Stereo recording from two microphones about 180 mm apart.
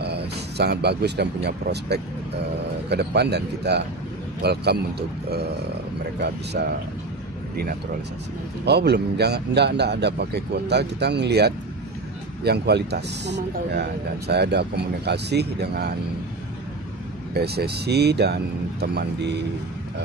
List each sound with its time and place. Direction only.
0.0 s speech: 65° right (ahead or behind)
6.1 s speech: 65° right (ahead or behind)
8.6 s speech: 65° right (ahead or behind)
17.3 s speech: 65° right (ahead or behind)